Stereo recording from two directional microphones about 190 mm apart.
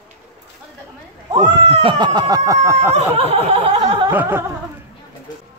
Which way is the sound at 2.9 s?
35° right (ahead or behind).